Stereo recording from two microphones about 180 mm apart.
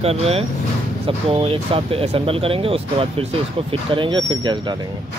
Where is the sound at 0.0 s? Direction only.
35° right (ahead or behind).